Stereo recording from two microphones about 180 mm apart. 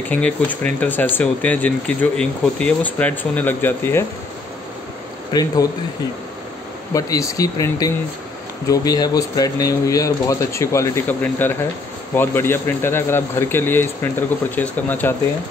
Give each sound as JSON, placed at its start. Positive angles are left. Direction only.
{"t": 0.1, "sound": "speech", "side_deg": 10}
{"t": 5.3, "sound": "speech", "side_deg": 20}
{"t": 6.9, "sound": "speech", "side_deg": 20}